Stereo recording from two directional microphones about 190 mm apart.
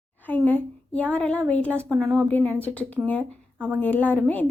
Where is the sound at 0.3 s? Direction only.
10° left (ahead or behind).